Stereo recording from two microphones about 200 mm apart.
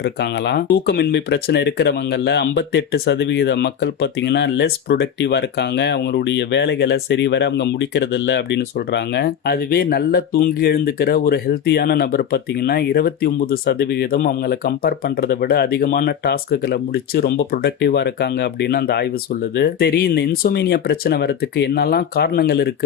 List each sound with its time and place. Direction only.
0.0 s speech: 55° left (ahead or behind)